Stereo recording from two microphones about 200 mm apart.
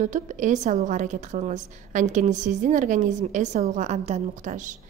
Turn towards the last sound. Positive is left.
turn(degrees=-40)  # may be behind; listen again after turning